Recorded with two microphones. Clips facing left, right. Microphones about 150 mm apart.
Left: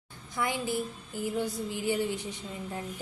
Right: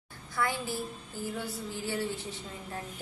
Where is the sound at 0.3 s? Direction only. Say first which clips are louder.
Left 2 dB; 15° left (ahead or behind).